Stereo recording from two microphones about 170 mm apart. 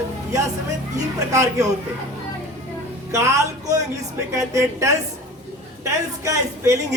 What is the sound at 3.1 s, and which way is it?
A woman's voice, 20° right (ahead or behind).